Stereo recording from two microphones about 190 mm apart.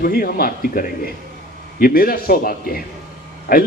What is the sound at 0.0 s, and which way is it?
A man's voice, 50° left (ahead or behind).